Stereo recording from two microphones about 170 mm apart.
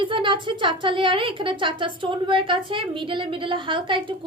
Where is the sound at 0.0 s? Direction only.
30° right (ahead or behind).